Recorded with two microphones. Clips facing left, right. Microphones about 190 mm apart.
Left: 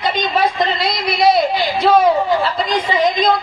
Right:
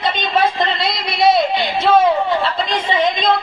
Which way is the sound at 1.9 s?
25° right (ahead or behind).